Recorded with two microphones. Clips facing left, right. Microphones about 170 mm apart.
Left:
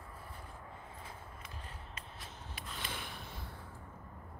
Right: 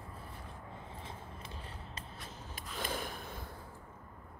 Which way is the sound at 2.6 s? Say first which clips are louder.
Right 6 dB; 45° right (ahead or behind).